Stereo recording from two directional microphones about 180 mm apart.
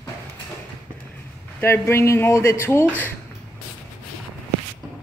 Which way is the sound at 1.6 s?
15° left (ahead or behind).